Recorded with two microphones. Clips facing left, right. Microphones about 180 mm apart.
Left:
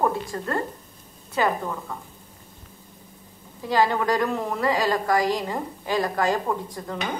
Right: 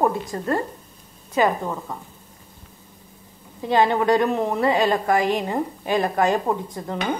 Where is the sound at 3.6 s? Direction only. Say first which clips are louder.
Right 3 dB; 20° right (ahead or behind).